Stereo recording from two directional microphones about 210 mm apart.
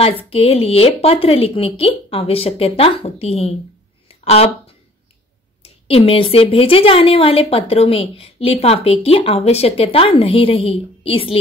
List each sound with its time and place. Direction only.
0.3 s a woman's voice: 25° left (ahead or behind)
5.6 s a woman's voice: 30° left (ahead or behind)